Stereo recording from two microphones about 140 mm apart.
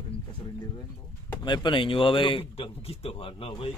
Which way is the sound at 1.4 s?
35° left (ahead or behind).